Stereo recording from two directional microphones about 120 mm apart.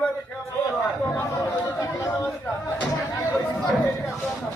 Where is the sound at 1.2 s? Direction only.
25° left (ahead or behind).